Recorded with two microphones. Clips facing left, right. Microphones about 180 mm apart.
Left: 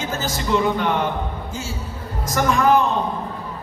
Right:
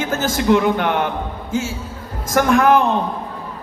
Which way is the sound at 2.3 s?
55° right (ahead or behind).